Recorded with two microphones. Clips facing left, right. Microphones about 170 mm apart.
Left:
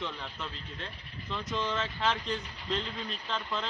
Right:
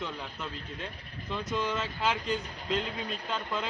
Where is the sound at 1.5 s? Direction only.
10° right (ahead or behind).